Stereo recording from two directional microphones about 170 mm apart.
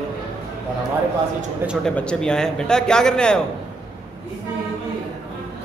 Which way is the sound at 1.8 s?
5° left (ahead or behind).